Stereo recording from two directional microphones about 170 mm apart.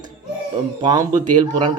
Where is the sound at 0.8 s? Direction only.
20° right (ahead or behind).